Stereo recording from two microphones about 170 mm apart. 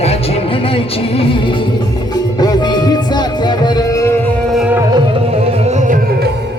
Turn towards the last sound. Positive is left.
turn(degrees=-45)  # may be behind; listen again after turning